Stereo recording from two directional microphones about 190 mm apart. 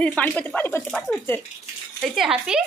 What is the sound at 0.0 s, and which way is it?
Speech, 5° left (ahead or behind).